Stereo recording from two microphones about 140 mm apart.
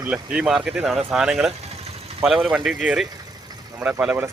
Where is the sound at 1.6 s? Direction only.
45° right (ahead or behind).